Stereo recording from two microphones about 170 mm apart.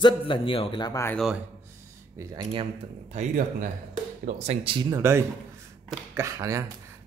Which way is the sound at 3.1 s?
55° right (ahead or behind).